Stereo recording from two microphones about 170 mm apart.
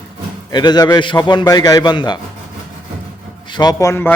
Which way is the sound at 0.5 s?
25° left (ahead or behind).